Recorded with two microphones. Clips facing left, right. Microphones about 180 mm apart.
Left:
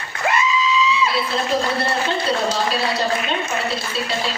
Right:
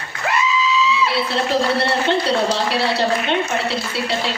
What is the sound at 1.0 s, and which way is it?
A man's voice, 70° right (ahead or behind).